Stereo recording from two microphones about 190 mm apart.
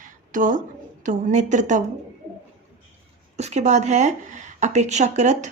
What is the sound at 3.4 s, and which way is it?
Speech, 35° right (ahead or behind).